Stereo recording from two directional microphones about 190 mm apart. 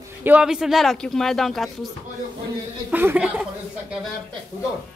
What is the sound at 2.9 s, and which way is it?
Speech, 10° right (ahead or behind).